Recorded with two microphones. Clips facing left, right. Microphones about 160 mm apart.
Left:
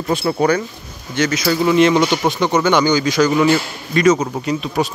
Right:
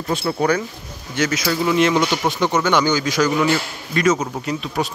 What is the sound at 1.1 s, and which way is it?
Speech, 5° right (ahead or behind).